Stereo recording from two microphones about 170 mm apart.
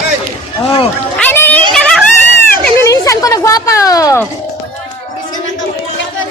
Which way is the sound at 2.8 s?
20° left (ahead or behind).